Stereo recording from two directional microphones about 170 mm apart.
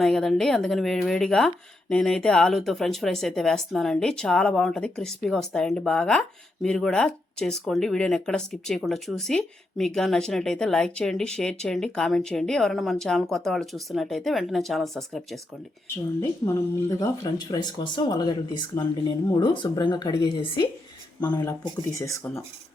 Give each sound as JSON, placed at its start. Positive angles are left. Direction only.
{"t": 0.0, "sound": "speech", "side_deg": 5}
{"t": 16.5, "sound": "speech", "side_deg": 15}